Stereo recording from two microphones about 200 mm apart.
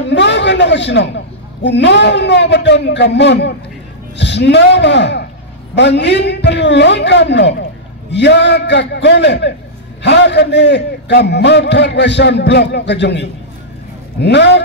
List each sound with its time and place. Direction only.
0.1 s a man's voice: 60° left (ahead or behind)